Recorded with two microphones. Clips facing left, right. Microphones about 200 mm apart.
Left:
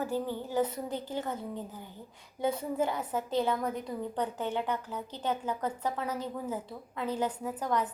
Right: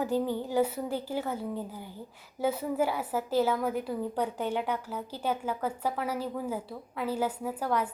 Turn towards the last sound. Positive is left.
turn(degrees=-10)  # may be behind; listen again after turning